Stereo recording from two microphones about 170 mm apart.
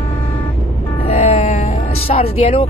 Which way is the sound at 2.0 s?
35° left (ahead or behind).